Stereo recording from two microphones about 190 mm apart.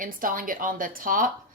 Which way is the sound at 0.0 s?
45° right (ahead or behind).